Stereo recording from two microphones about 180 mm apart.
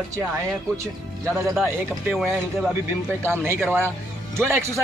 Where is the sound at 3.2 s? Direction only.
15° right (ahead or behind).